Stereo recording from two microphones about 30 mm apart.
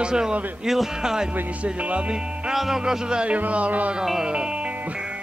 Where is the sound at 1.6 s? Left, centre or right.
Right.